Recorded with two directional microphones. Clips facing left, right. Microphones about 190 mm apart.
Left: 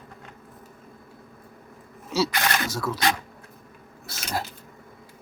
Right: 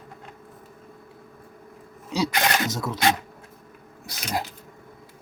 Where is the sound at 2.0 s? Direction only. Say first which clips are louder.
Right 1 dB; 15° right (ahead or behind).